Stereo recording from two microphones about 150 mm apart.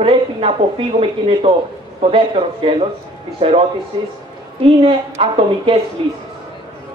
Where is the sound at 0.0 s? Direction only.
40° right (ahead or behind).